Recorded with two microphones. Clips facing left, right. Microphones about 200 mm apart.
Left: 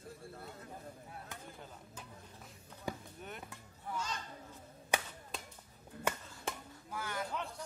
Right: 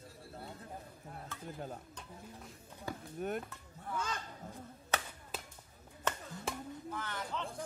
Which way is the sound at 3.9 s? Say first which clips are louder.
Right 2 dB; 55° right (ahead or behind).